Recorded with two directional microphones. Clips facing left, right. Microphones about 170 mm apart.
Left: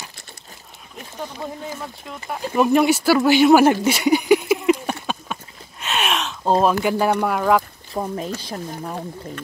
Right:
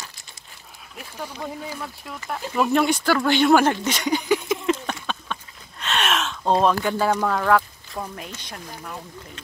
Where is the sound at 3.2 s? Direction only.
5° left (ahead or behind).